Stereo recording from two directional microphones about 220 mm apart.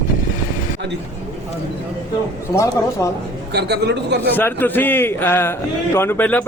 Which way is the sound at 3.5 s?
50° right (ahead or behind).